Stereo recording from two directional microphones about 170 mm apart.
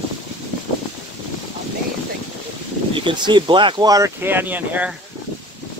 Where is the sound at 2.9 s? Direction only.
30° right (ahead or behind); by 4.9 s 10° right (ahead or behind).